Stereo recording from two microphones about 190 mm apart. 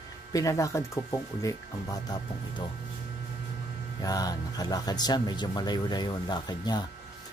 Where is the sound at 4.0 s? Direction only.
20° left (ahead or behind).